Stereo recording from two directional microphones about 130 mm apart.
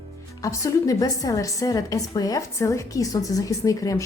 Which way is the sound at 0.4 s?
25° left (ahead or behind).